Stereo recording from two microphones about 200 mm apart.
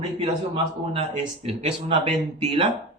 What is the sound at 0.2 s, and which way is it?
A man's voice, 30° right (ahead or behind).